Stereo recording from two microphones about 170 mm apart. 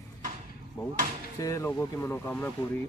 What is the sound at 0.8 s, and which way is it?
Speech, 25° left (ahead or behind).